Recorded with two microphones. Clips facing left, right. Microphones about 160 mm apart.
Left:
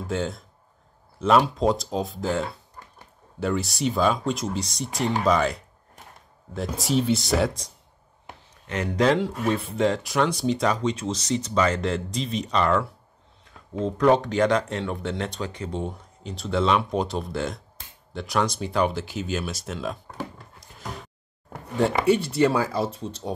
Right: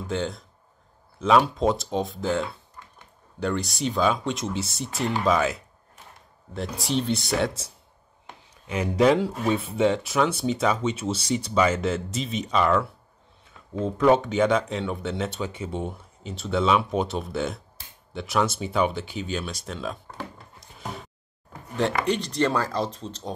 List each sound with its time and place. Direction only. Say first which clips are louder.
0.0 s speech: left 1 dB; centre (ahead or behind)
8.6 s speech: right 2 dB; 10° right (ahead or behind)
13.8 s speech: even; 5° right (ahead or behind)
22.0 s speech: left 4 dB; 10° left (ahead or behind)